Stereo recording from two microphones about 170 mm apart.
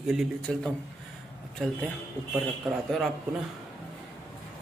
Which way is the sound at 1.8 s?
10° right (ahead or behind).